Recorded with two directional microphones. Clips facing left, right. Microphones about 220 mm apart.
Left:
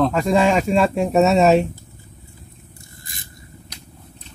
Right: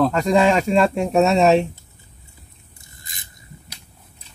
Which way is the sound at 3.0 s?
20° right (ahead or behind).